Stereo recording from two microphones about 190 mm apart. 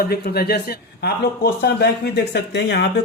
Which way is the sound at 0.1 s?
55° left (ahead or behind).